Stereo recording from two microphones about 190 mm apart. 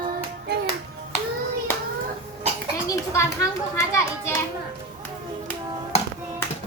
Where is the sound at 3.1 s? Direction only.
15° left (ahead or behind).